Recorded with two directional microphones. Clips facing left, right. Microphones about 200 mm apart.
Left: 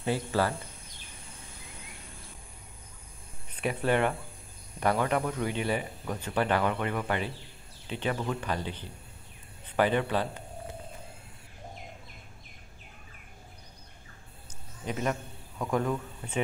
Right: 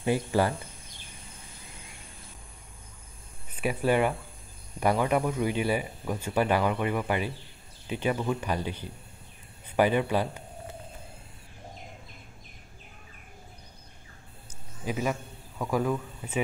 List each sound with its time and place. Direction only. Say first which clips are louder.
0.0 s speech: right 3 dB; 15° right (ahead or behind)
3.5 s speech: right 2 dB; 10° right (ahead or behind)
14.9 s speech: right 1 dB; 5° right (ahead or behind)